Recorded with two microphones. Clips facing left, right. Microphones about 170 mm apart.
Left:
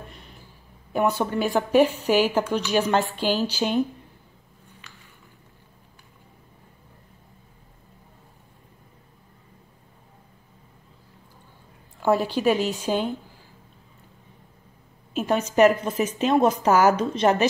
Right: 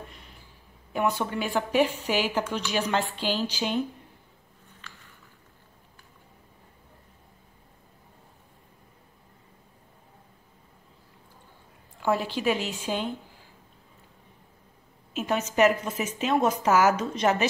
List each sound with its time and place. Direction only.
0.9 s speech: 40° left (ahead or behind)
12.0 s a woman's voice: 40° left (ahead or behind)
15.1 s a woman's voice: 35° left (ahead or behind)